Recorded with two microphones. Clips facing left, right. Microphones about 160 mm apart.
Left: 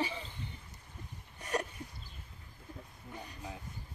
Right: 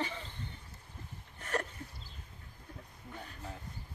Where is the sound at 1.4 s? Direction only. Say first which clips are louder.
Left 1 dB; 15° left (ahead or behind).